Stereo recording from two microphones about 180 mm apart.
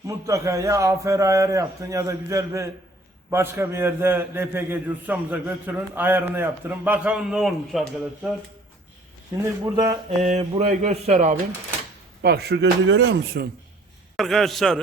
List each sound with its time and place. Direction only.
0.1 s a man's voice: 15° right (ahead or behind); by 8.3 s centre (ahead or behind)
9.4 s a man's voice: 15° right (ahead or behind)
9.9 s a man's voice: 40° right (ahead or behind)
12.2 s speech: 65° right (ahead or behind)
14.2 s a man's voice: centre (ahead or behind)